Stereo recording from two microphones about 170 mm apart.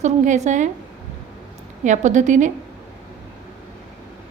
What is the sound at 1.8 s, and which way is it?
Speech, 45° right (ahead or behind).